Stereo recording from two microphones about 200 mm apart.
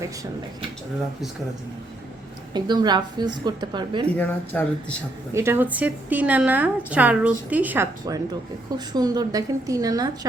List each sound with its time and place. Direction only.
2.5 s a woman's voice: 20° right (ahead or behind)
4.2 s speech: 10° left (ahead or behind)
5.3 s a woman's voice: 10° right (ahead or behind)